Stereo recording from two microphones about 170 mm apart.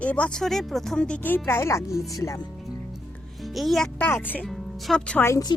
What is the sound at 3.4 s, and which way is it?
Speech, centre (ahead or behind).